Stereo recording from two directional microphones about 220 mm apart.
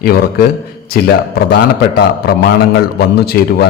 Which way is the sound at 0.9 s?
45° left (ahead or behind).